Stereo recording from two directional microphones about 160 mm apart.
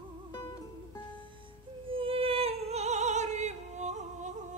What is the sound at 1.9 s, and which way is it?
Opera, 35° right (ahead or behind).